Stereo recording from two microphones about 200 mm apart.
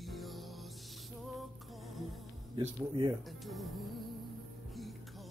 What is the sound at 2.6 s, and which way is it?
Speech, 20° right (ahead or behind).